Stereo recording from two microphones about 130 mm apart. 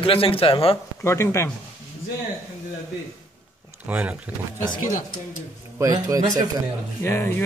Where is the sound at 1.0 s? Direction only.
20° left (ahead or behind).